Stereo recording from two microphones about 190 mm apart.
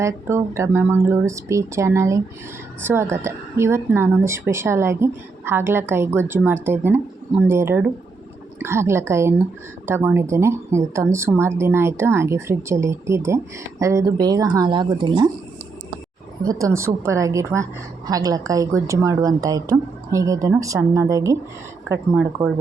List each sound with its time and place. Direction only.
0.0 s speech: 15° right (ahead or behind)
16.5 s speech: 15° right (ahead or behind)
22.4 s speech: 15° right (ahead or behind)